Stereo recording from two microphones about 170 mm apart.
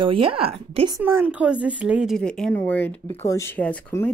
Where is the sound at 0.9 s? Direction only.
15° right (ahead or behind).